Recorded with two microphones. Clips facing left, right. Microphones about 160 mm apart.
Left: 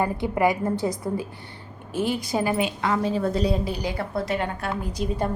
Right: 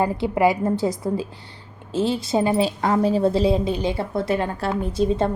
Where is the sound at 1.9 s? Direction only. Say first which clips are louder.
Right 4 dB; 25° right (ahead or behind).